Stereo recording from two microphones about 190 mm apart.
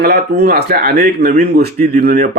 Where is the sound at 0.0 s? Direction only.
55° right (ahead or behind).